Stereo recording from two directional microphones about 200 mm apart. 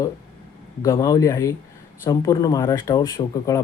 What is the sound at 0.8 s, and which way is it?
Speech, 15° left (ahead or behind).